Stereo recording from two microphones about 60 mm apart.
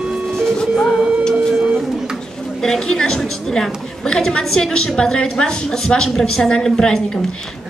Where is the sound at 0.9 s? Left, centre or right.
Centre.